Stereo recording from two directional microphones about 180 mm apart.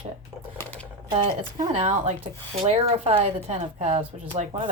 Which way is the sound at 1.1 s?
25° right (ahead or behind).